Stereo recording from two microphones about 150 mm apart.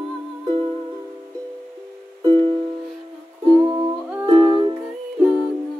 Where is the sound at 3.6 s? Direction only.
30° right (ahead or behind).